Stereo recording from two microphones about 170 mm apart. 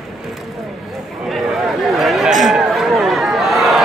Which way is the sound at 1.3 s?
Centre (ahead or behind).